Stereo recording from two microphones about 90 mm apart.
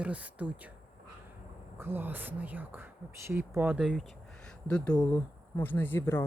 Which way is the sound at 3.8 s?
5° right (ahead or behind).